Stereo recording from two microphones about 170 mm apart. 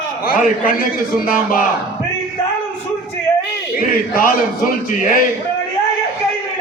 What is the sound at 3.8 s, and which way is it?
Speech, 60° left (ahead or behind).